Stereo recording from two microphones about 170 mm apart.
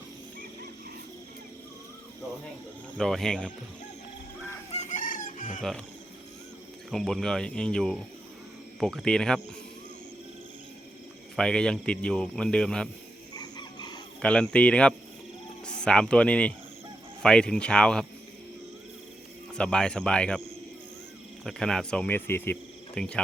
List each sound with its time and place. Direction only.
3.0 s speech: centre (ahead or behind)
4.7 s chicken: 45° left (ahead or behind)
6.9 s speech: centre (ahead or behind)
11.3 s speech: 5° left (ahead or behind)
13.3 s chicken: 25° left (ahead or behind)
14.2 s speech: 5° left (ahead or behind)
19.5 s speech: 5° left (ahead or behind)
21.4 s speech: 5° left (ahead or behind)